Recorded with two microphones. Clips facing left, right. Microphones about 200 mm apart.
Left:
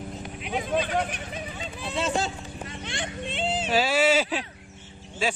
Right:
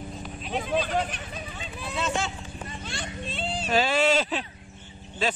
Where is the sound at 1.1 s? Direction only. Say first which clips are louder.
Left 3 dB; 20° left (ahead or behind).